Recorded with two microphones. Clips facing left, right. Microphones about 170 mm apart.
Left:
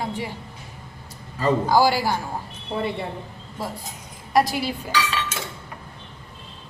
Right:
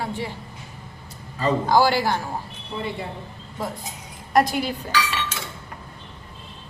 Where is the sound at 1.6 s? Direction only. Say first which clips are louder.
Right 2 dB; 10° left (ahead or behind).